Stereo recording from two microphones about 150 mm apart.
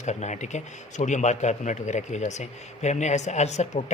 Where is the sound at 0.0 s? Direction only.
50° left (ahead or behind).